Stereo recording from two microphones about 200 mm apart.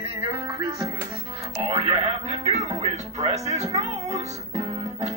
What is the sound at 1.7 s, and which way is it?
Speech, 30° right (ahead or behind).